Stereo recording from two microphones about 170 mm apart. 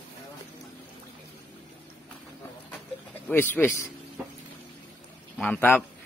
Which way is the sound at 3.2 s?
10° left (ahead or behind).